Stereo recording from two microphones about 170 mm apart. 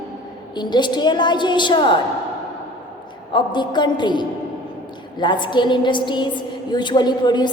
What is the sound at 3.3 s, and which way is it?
A woman's voice, 25° left (ahead or behind).